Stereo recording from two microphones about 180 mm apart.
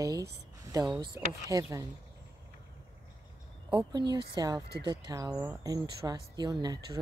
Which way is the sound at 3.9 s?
20° right (ahead or behind).